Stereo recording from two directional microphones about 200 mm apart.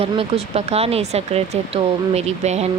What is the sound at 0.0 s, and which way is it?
Speech, 30° right (ahead or behind).